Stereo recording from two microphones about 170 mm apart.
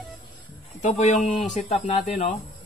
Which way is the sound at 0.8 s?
40° left (ahead or behind).